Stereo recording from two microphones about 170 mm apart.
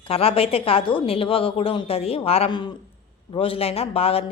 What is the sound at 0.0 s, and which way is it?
A woman's voice, 35° left (ahead or behind).